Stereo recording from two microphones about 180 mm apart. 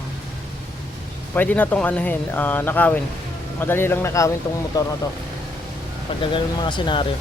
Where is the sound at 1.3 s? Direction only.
10° left (ahead or behind).